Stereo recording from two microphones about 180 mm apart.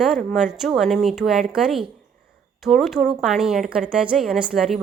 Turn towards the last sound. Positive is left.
turn(degrees=0)  # may be behind; listen again after turning